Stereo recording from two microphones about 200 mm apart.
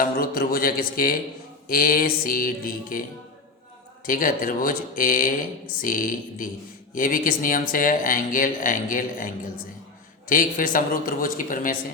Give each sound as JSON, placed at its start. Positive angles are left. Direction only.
{"t": 0.0, "sound": "speech", "side_deg": 45}
{"t": 4.0, "sound": "speech", "side_deg": 45}